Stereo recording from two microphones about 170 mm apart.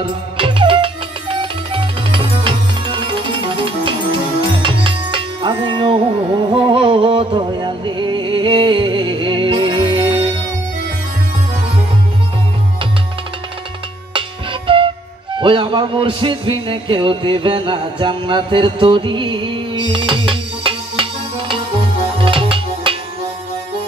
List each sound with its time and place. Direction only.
0.0 s music: 30° right (ahead or behind)
14.1 s music: 30° right (ahead or behind)